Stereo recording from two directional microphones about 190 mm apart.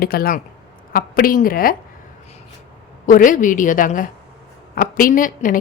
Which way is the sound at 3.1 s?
45° left (ahead or behind).